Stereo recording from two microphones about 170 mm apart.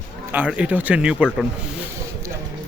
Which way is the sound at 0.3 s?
10° right (ahead or behind).